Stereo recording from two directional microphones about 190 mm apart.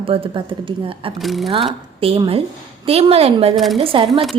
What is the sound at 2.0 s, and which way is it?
A woman's voice, 30° right (ahead or behind).